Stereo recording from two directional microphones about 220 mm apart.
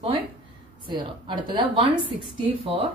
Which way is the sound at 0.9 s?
20° right (ahead or behind).